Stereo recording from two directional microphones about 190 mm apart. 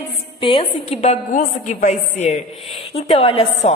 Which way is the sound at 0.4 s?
30° left (ahead or behind).